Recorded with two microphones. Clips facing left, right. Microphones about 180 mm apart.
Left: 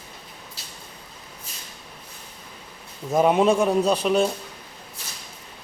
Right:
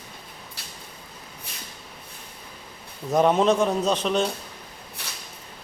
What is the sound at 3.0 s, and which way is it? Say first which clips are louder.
A man's voice: left 1 dB; 10° left (ahead or behind).